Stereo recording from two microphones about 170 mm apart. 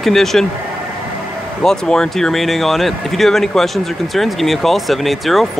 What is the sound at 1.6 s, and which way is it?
Speech, 5° left (ahead or behind).